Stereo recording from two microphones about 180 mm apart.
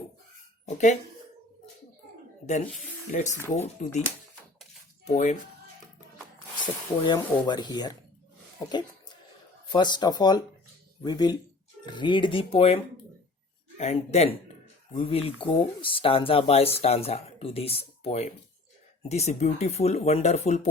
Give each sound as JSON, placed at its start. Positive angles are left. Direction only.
{"t": 0.6, "sound": "speech", "side_deg": 40}
{"t": 3.1, "sound": "speech", "side_deg": 40}
{"t": 5.0, "sound": "speech", "side_deg": 40}
{"t": 6.6, "sound": "speech", "side_deg": 25}
{"t": 9.6, "sound": "speech", "side_deg": 25}